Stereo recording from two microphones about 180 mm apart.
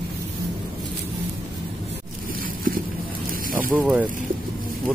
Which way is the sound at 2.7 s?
50° right (ahead or behind).